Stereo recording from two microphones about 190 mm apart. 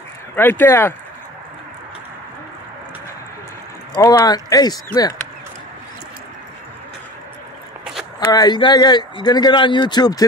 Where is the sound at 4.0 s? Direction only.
15° left (ahead or behind).